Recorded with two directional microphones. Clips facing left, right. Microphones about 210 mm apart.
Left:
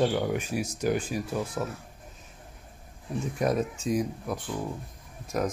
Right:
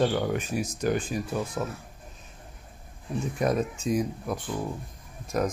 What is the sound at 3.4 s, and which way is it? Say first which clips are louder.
Speech: even; centre (ahead or behind).